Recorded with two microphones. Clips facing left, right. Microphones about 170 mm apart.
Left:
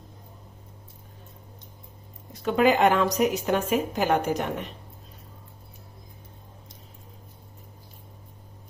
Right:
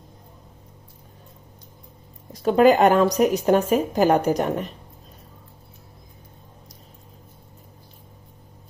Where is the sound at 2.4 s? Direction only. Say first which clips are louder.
Right 5 dB; 40° right (ahead or behind).